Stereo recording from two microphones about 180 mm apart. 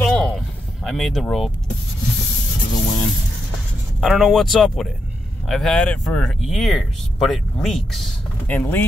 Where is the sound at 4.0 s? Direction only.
Centre (ahead or behind).